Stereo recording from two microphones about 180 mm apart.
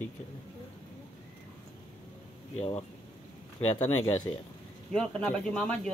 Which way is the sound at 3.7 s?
20° left (ahead or behind).